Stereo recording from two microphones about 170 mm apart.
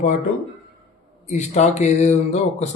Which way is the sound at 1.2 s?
45° left (ahead or behind).